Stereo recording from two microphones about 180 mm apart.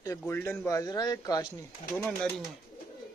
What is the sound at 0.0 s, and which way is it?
A man's voice, 15° left (ahead or behind).